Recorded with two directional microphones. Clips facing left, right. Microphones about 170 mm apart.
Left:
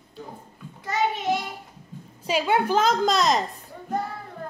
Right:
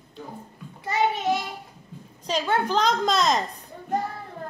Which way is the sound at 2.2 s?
10° left (ahead or behind).